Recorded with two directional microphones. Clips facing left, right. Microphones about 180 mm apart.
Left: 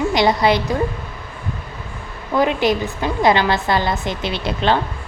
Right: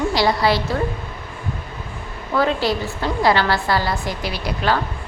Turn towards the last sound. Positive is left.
turn(degrees=25)  # may be behind; listen again after turning